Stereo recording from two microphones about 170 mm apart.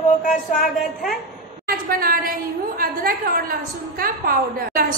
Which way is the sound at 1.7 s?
60° right (ahead or behind).